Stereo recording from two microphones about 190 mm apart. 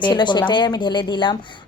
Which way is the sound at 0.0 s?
25° left (ahead or behind).